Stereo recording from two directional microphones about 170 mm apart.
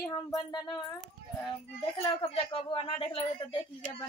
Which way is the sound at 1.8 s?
30° left (ahead or behind).